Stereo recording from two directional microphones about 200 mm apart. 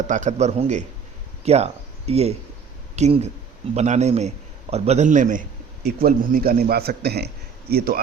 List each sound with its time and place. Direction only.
0.1 s a man's voice: 35° right (ahead or behind)